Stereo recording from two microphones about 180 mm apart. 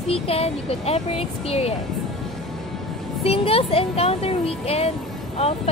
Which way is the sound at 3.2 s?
35° left (ahead or behind).